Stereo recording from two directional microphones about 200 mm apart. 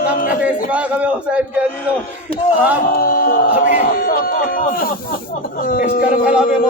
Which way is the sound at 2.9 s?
45° left (ahead or behind).